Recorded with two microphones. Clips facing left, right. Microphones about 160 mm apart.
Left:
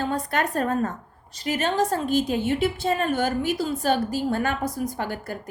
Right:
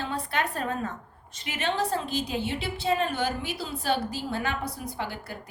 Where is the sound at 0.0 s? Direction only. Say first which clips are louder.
Left 5 dB; 45° left (ahead or behind).